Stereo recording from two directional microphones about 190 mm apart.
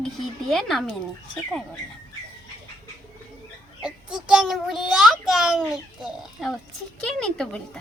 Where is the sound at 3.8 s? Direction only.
5° right (ahead or behind).